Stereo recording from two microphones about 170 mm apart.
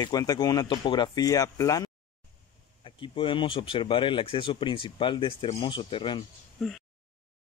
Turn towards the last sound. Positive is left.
turn(degrees=0)  # may be behind; listen again after turning